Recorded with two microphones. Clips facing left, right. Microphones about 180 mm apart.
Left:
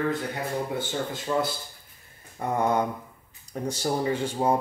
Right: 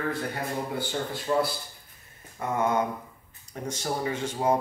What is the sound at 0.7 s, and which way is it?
Speech, 25° left (ahead or behind).